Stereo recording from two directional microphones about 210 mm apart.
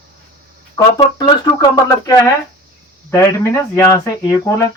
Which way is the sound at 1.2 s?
20° left (ahead or behind).